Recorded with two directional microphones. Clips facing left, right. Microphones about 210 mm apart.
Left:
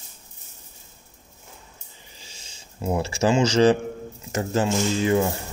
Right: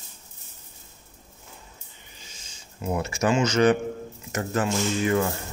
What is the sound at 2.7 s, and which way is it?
Speech, 30° left (ahead or behind).